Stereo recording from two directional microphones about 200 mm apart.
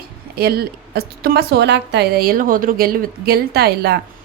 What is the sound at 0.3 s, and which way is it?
A woman's voice, 50° right (ahead or behind).